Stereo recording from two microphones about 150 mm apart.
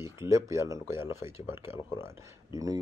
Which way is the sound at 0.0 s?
20° right (ahead or behind).